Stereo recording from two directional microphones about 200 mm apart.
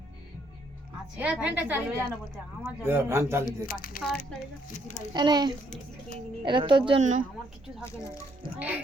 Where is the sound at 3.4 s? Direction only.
45° left (ahead or behind).